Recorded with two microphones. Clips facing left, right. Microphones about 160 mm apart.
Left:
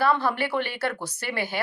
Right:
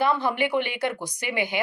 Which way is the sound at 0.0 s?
15° right (ahead or behind).